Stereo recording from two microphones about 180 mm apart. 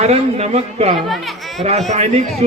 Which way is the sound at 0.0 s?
35° right (ahead or behind).